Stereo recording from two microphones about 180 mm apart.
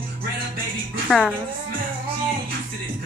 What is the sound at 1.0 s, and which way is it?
Speech, centre (ahead or behind).